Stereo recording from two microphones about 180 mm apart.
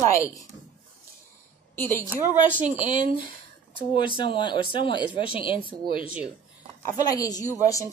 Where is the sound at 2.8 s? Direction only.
45° right (ahead or behind).